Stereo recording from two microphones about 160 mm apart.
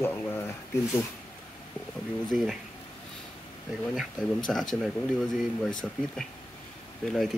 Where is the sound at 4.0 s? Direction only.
Centre (ahead or behind).